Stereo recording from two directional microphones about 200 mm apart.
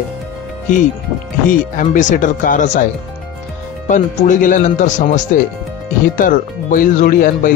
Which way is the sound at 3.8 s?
40° left (ahead or behind).